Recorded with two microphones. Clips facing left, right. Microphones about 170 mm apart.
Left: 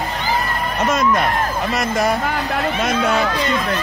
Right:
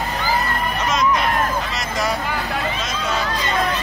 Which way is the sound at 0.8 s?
55° left (ahead or behind).